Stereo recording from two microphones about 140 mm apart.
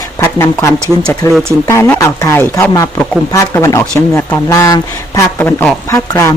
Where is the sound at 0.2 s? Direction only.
20° left (ahead or behind).